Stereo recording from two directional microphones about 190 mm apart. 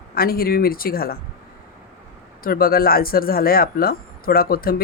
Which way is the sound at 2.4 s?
50° left (ahead or behind).